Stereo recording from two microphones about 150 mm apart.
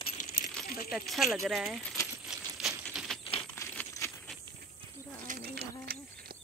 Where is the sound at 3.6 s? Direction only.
20° left (ahead or behind).